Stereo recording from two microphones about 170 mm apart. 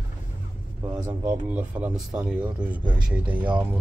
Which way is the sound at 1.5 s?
5° right (ahead or behind).